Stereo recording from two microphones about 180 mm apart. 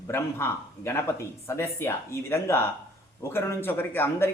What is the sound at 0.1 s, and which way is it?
Speech, 15° left (ahead or behind).